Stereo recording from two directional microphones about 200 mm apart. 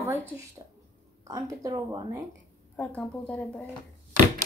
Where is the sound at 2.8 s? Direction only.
5° left (ahead or behind).